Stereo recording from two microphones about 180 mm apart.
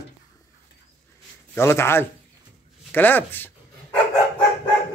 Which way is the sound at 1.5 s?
15° left (ahead or behind).